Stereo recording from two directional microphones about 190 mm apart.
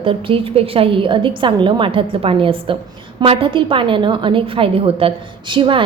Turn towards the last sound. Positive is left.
turn(degrees=-25)  # may be behind; listen again after turning